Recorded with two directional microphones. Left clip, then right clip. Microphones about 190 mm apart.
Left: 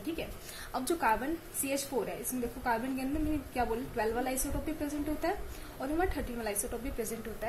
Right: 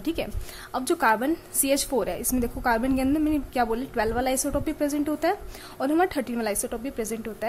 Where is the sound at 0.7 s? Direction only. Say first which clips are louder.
Right 8 dB; 30° right (ahead or behind).